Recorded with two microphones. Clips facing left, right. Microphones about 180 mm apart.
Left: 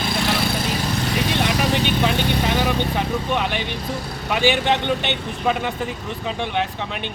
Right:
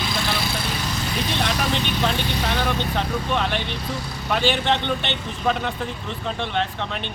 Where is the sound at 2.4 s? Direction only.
10° left (ahead or behind).